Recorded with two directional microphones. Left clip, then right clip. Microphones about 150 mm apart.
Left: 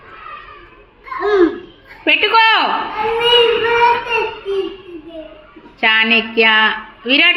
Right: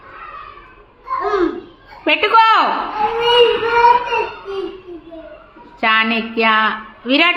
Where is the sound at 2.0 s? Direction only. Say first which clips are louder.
Even; 10° right (ahead or behind).